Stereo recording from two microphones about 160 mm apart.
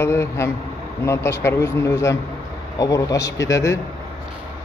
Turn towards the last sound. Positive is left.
turn(degrees=20)  # may be behind; listen again after turning